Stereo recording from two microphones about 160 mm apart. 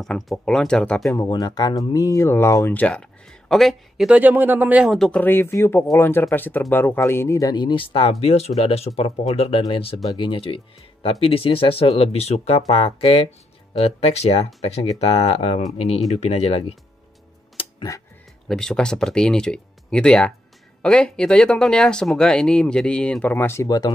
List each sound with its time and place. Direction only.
0.0 s speech: centre (ahead or behind)
1.1 s speech: 20° left (ahead or behind); by 4.9 s 10° right (ahead or behind)
4.9 s speech: 5° left (ahead or behind); by 16.7 s 40° left (ahead or behind)
17.6 s music: 30° left (ahead or behind)
18.5 s speech: 5° left (ahead or behind); by 23.9 s 20° left (ahead or behind)